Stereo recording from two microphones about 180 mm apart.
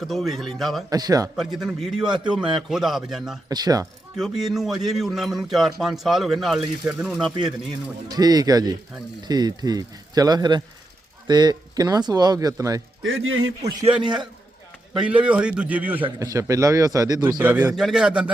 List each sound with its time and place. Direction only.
0.0 s speech: centre (ahead or behind)
0.9 s speech: 20° right (ahead or behind)
1.5 s speech: centre (ahead or behind)
3.5 s speech: 20° right (ahead or behind)
4.2 s speech: centre (ahead or behind)
8.1 s speech: 20° right (ahead or behind)
13.0 s speech: 90° right
14.9 s a man's voice: 5° right (ahead or behind)
16.0 s speech: 20° right (ahead or behind)